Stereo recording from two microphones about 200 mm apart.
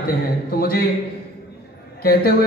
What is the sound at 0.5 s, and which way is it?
Speech, 50° left (ahead or behind).